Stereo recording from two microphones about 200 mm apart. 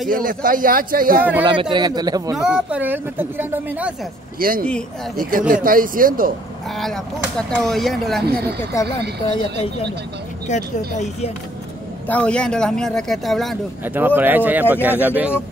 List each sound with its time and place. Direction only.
0.1 s a man's voice: 45° right (ahead or behind)
1.4 s speech: 25° right (ahead or behind)
2.3 s speech: 5° right (ahead or behind)
4.4 s a man's voice: 45° right (ahead or behind)
4.6 s speech: 5° left (ahead or behind)
5.5 s a man's voice: 45° right (ahead or behind)
6.7 s speech: centre (ahead or behind)
8.3 s a man's voice: 50° right (ahead or behind)
10.5 s speech: 35° left (ahead or behind)
12.1 s speech: 5° left (ahead or behind)
13.8 s speech: 10° right (ahead or behind)